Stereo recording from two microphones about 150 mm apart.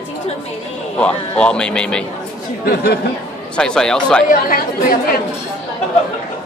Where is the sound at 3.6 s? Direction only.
5° left (ahead or behind).